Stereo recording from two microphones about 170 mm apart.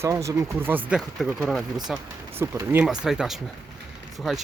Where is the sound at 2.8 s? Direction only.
5° right (ahead or behind).